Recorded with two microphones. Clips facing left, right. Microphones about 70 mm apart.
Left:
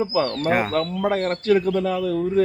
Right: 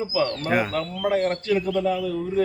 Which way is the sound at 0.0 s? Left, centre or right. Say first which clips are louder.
Left 3 dB; left.